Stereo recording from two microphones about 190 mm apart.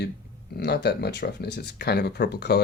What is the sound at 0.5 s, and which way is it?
Speech, 60° left (ahead or behind).